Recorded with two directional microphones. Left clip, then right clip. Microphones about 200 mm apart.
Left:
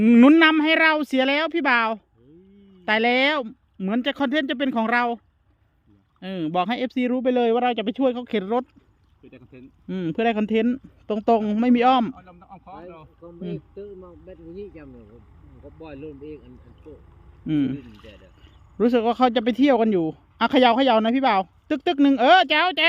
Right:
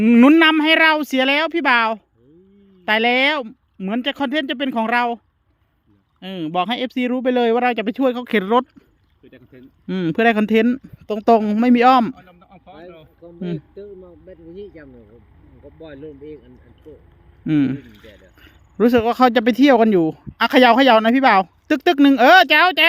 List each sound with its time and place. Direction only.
0.0 s speech: 10° right (ahead or behind); by 8.6 s 30° right (ahead or behind)
9.2 s speech: 5° right (ahead or behind)
9.8 s speech: 25° right (ahead or behind)
12.3 s a sound: 5° right (ahead or behind)
13.2 s speech: 15° right (ahead or behind)
17.4 s speech: 30° right (ahead or behind)